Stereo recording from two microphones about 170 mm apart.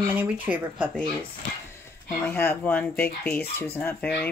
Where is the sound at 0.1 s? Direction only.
10° right (ahead or behind).